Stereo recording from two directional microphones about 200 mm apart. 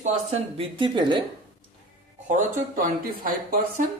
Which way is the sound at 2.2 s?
40° right (ahead or behind).